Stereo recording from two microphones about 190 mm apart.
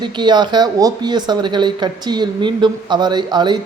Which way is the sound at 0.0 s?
25° right (ahead or behind).